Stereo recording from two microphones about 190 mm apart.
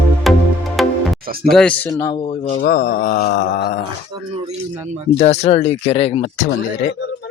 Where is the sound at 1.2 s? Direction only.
50° right (ahead or behind).